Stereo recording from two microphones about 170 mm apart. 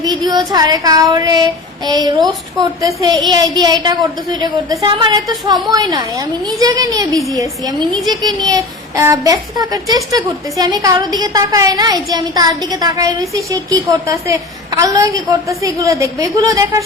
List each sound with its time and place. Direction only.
0.0 s a child's voice: 25° right (ahead or behind)